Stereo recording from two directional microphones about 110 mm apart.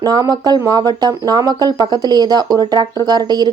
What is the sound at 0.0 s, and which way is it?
Speech, 35° right (ahead or behind).